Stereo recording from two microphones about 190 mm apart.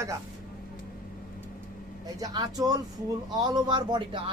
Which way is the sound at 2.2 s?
20° right (ahead or behind).